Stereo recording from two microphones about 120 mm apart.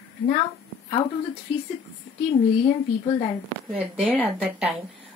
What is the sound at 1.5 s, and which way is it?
Speech, 60° left (ahead or behind).